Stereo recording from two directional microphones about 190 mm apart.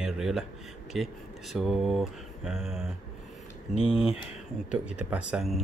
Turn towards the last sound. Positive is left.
turn(degrees=-5)  # may be behind; listen again after turning